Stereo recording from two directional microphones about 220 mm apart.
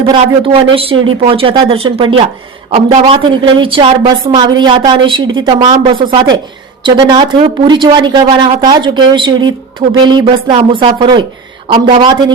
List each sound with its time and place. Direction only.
0.0 s speech: 25° right (ahead or behind)